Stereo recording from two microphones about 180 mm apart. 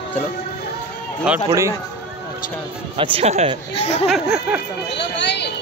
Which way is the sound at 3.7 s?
35° left (ahead or behind).